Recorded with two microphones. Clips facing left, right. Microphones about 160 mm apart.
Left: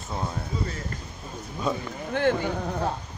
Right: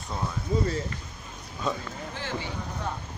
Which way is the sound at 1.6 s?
10° left (ahead or behind).